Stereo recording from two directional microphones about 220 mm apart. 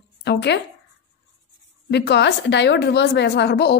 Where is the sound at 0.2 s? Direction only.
50° left (ahead or behind).